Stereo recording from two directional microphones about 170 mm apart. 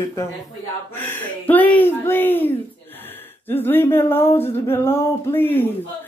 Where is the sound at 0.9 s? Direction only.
10° left (ahead or behind).